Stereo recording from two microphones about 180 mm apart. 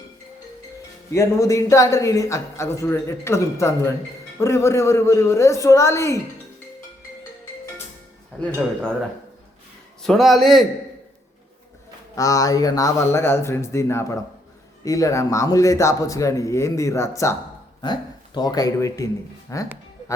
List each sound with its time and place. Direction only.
1.1 s a man's voice: 15° left (ahead or behind)
8.4 s a man's voice: 5° left (ahead or behind)
10.1 s a man's voice: centre (ahead or behind)
12.1 s a man's voice: 20° left (ahead or behind)
18.3 s speech: 20° left (ahead or behind)